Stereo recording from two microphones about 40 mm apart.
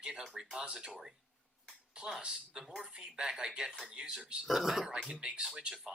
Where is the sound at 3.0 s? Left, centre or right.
Centre.